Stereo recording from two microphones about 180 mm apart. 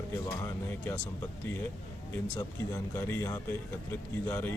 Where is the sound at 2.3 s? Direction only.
15° left (ahead or behind).